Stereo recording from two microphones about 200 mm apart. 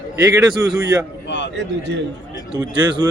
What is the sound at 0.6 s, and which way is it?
Speech, 15° right (ahead or behind).